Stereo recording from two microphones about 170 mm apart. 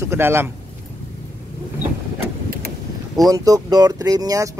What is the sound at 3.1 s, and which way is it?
Speech, 20° right (ahead or behind).